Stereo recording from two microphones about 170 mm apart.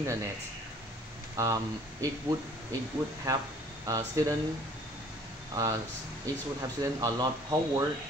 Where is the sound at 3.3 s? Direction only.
20° right (ahead or behind).